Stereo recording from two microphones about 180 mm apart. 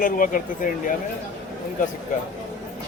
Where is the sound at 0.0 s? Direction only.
50° left (ahead or behind).